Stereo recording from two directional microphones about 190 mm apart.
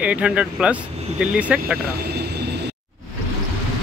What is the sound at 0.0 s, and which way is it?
Speech, 5° right (ahead or behind).